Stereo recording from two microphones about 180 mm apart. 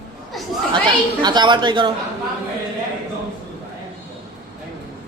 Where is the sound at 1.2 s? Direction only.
25° right (ahead or behind).